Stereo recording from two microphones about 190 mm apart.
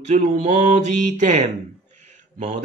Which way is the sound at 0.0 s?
35° right (ahead or behind).